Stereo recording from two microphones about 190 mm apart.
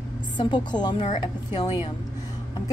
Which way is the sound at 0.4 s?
25° left (ahead or behind).